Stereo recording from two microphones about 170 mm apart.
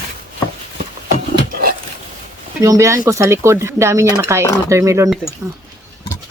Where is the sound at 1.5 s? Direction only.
60° right (ahead or behind).